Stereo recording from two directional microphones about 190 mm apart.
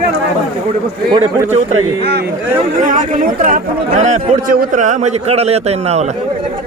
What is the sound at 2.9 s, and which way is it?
Speech, 45° right (ahead or behind).